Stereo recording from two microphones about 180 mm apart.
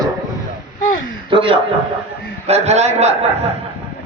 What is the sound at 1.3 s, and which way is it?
A man's voice, 30° right (ahead or behind).